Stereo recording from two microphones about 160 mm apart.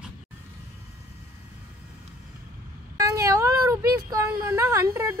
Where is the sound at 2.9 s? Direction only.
20° right (ahead or behind).